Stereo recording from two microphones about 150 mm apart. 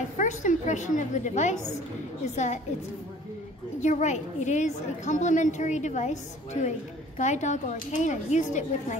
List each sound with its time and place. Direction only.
0.2 s a woman's voice: 55° left (ahead or behind)
3.8 s a woman's voice: 50° left (ahead or behind)